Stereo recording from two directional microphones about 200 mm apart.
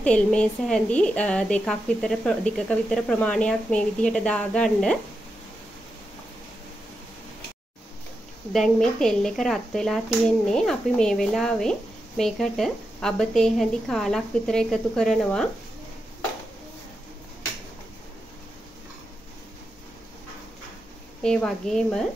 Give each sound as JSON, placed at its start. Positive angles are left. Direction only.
{"t": 0.0, "sound": "a woman's voice", "side_deg": 5}
{"t": 8.5, "sound": "a woman's voice", "side_deg": 5}
{"t": 21.2, "sound": "a woman's voice", "side_deg": 5}